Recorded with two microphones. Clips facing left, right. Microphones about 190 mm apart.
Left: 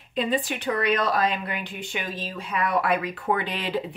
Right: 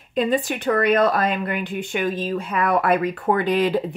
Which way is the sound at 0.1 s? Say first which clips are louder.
Right 5 dB; 45° right (ahead or behind).